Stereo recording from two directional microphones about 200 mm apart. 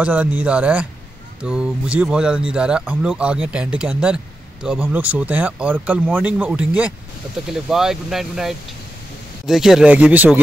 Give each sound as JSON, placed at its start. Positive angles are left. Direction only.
{"t": 0.0, "sound": "speech", "side_deg": -5}